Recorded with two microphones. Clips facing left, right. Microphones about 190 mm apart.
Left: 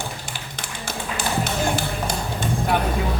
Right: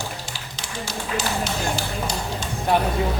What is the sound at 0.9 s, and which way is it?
Tap, 55° left (ahead or behind).